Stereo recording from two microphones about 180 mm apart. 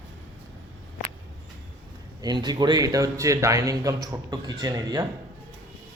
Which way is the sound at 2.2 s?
25° right (ahead or behind).